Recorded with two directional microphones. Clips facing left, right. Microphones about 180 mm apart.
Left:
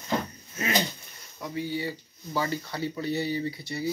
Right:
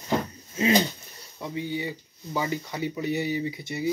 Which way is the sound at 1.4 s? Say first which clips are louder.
Even; 20° right (ahead or behind).